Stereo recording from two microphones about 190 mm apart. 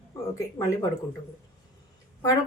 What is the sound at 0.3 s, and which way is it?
Speech, 15° left (ahead or behind).